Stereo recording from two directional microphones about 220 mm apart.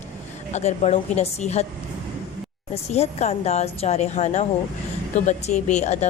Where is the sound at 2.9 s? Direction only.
30° left (ahead or behind).